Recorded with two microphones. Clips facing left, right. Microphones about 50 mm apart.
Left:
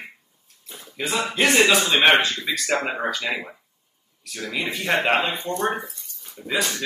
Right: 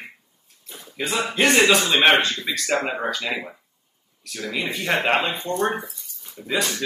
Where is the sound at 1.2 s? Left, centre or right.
Centre.